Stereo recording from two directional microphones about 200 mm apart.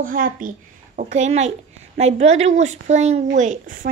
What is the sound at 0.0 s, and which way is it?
A child's voice, 45° right (ahead or behind).